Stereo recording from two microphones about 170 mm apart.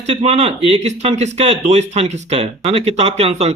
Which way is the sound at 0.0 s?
40° right (ahead or behind).